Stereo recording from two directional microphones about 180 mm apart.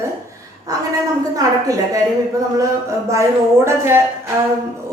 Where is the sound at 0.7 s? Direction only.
20° right (ahead or behind).